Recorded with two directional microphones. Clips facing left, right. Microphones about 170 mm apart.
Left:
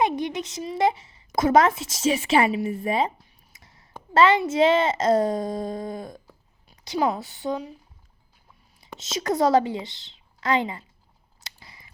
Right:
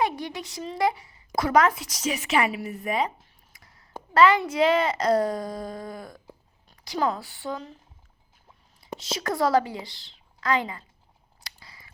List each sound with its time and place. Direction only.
0.0 s a woman's voice: 20° left (ahead or behind)
8.8 s a woman's voice: 20° left (ahead or behind)
11.3 s scissors: 20° left (ahead or behind)